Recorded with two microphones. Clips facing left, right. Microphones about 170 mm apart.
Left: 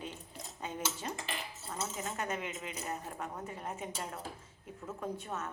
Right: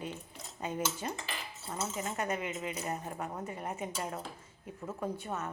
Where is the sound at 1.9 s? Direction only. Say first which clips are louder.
Right 4 dB; centre (ahead or behind).